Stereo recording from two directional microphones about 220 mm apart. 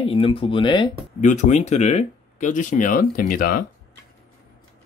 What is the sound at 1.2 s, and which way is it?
Speech, 35° left (ahead or behind).